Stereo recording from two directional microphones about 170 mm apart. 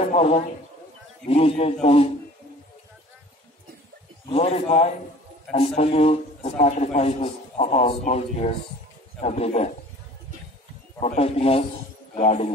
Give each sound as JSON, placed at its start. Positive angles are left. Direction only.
{"t": 0.0, "sound": "a sound", "side_deg": 35}
{"t": 1.3, "sound": "a man's voice", "side_deg": 35}
{"t": 4.3, "sound": "a man's voice", "side_deg": 35}
{"t": 11.0, "sound": "a man's voice", "side_deg": 40}